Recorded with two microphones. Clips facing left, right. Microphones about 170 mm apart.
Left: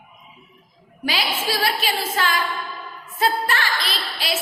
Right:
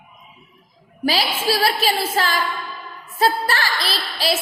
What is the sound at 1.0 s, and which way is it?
A woman's voice, 35° right (ahead or behind).